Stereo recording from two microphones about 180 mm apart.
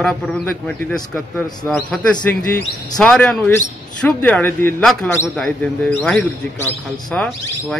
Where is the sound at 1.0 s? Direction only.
20° left (ahead or behind).